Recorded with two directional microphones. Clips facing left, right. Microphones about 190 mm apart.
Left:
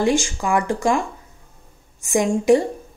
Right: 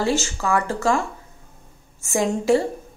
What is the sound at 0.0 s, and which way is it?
A woman's voice, 15° left (ahead or behind).